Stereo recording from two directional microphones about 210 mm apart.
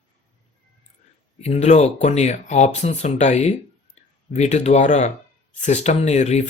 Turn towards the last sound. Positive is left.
turn(degrees=30)  # may be behind; listen again after turning